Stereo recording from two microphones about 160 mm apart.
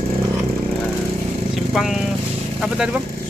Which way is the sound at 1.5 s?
Centre (ahead or behind).